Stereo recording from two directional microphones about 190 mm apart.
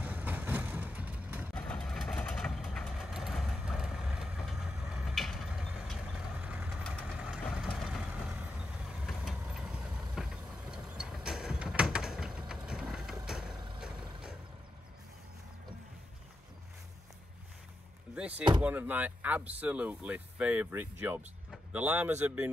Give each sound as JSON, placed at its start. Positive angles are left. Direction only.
{"t": 0.0, "sound": "vehicle", "side_deg": -10}
{"t": 1.5, "sound": "vehicle", "side_deg": 5}
{"t": 18.3, "sound": "speech", "side_deg": -25}
{"t": 18.6, "sound": "speech", "side_deg": -10}